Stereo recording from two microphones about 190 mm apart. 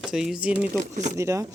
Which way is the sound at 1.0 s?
15° right (ahead or behind).